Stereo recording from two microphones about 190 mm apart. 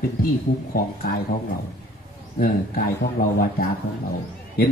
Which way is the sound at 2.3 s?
50° left (ahead or behind).